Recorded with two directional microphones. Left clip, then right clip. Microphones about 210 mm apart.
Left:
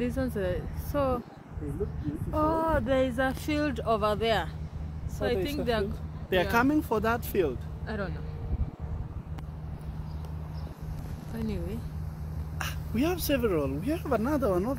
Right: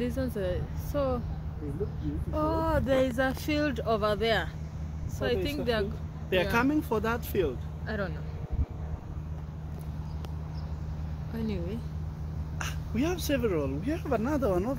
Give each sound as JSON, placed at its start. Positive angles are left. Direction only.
{"t": 0.0, "sound": "speech", "side_deg": 15}
{"t": 2.3, "sound": "speech", "side_deg": 15}
{"t": 6.3, "sound": "speech", "side_deg": 35}
{"t": 11.3, "sound": "speech", "side_deg": 0}
{"t": 12.5, "sound": "speech", "side_deg": 30}